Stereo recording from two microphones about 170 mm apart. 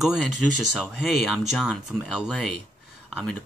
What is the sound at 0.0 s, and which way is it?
Speech, centre (ahead or behind).